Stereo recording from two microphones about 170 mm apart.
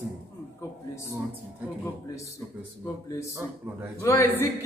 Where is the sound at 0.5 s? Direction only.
15° left (ahead or behind).